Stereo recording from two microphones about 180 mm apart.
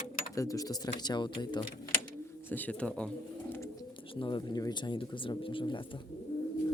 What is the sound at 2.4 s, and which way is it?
Speech, 10° left (ahead or behind).